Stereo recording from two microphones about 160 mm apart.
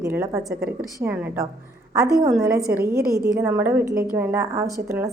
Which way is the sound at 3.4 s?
15° right (ahead or behind).